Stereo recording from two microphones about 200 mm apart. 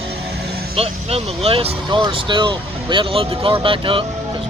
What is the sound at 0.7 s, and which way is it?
Speech, 30° right (ahead or behind).